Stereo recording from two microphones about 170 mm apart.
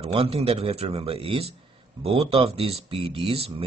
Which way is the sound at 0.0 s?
35° right (ahead or behind).